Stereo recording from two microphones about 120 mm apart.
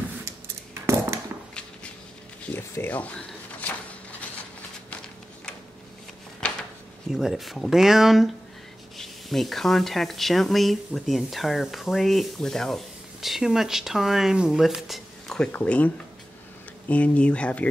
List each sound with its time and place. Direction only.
0.8 s a sound: 25° right (ahead or behind)
2.7 s speech: 15° left (ahead or behind)
7.1 s speech: 5° right (ahead or behind)
16.9 s speech: 10° left (ahead or behind)